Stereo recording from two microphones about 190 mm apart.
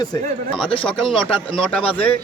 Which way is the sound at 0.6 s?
25° left (ahead or behind).